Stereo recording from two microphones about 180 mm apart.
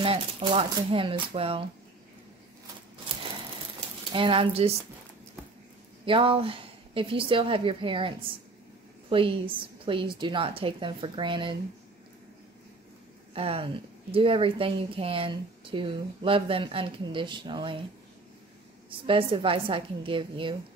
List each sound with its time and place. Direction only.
0.0 s speech: 30° right (ahead or behind)
4.1 s speech: 30° right (ahead or behind)
6.0 s speech: 30° right (ahead or behind)
9.1 s speech: 30° right (ahead or behind)
13.3 s speech: 30° right (ahead or behind)
18.9 s speech: 30° right (ahead or behind)